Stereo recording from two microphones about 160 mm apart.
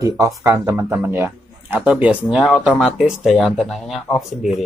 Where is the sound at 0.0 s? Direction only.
20° right (ahead or behind); by 4.6 s centre (ahead or behind).